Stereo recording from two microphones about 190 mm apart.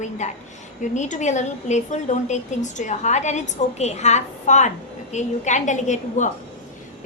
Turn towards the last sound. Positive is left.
turn(degrees=40)  # may be behind; listen again after turning